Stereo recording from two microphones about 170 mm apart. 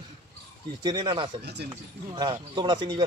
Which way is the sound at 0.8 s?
25° right (ahead or behind).